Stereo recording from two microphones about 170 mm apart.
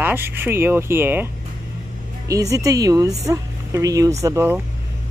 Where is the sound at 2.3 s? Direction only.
20° right (ahead or behind).